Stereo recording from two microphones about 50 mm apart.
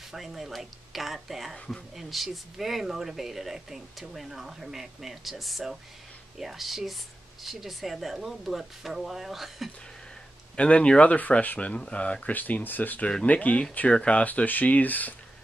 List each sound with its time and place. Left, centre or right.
0.1 s speech: centre
10.5 s speech: left
12.3 s speech: left
13.0 s speech: left
14.2 s speech: left